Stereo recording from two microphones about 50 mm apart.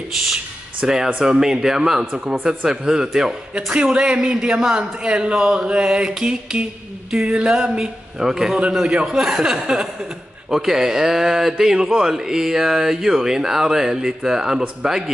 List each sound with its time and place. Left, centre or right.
0.8 s a man's voice: centre